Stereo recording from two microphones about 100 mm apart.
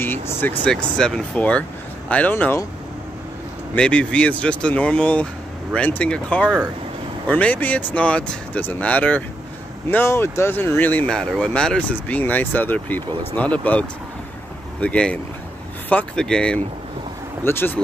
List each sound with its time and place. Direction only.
0.0 s speech: 20° left (ahead or behind)
0.7 s speech: 5° left (ahead or behind)
3.7 s speech: 10° left (ahead or behind)
17.4 s speech: 20° left (ahead or behind)